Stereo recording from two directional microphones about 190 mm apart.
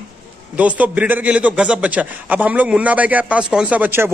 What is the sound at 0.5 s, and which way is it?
A man's voice, 5° right (ahead or behind).